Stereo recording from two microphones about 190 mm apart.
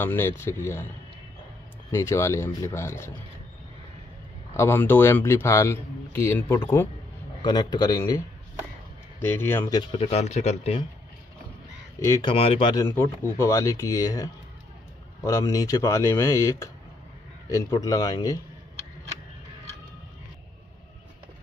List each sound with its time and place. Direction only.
0.0 s a man's voice: 10° left (ahead or behind)
1.9 s a man's voice: 15° left (ahead or behind)
4.6 s a man's voice: 10° left (ahead or behind)
9.2 s a man's voice: 10° left (ahead or behind)
9.8 s speech: 25° left (ahead or behind)
12.0 s speech: 20° left (ahead or behind)
12.8 s a man's voice: 15° left (ahead or behind)